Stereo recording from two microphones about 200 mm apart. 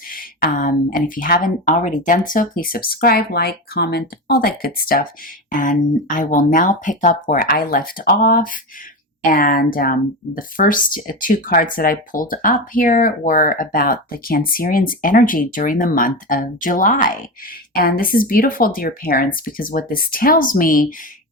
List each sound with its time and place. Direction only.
0.1 s speech: 45° left (ahead or behind)